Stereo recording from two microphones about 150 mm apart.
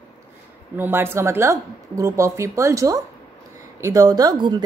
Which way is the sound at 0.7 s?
15° right (ahead or behind).